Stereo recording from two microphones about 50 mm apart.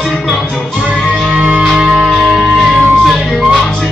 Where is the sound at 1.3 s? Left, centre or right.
Right.